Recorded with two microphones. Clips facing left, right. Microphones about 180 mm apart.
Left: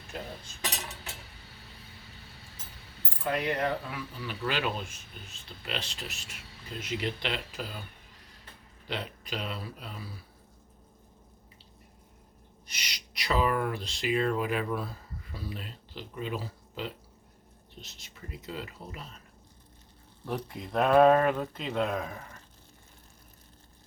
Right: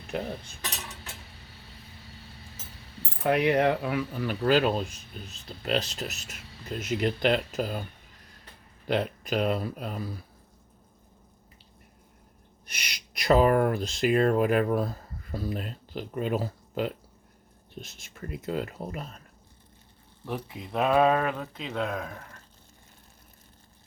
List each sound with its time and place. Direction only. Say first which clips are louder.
0.1 s speech: right 8 dB; 70° right (ahead or behind)
0.6 s cutlery: left 1 dB; 15° left (ahead or behind)
3.2 s speech: right 7 dB; 70° right (ahead or behind)
4.2 s speech: right 8 dB; 45° right (ahead or behind)
8.9 s speech: right 9 dB; 50° right (ahead or behind)
12.6 s owl: right 2 dB; 55° right (ahead or behind)
13.1 s speech: right 7 dB; 50° right (ahead or behind)
20.2 s speech: even; 5° right (ahead or behind)